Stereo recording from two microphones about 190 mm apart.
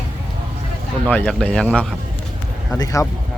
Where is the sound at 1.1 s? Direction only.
10° left (ahead or behind).